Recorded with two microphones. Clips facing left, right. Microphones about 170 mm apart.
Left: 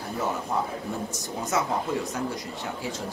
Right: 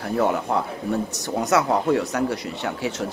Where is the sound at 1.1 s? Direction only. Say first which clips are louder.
Right 7 dB; 70° right (ahead or behind).